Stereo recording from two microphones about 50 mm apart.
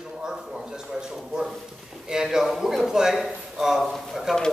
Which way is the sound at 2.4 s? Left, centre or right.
Centre.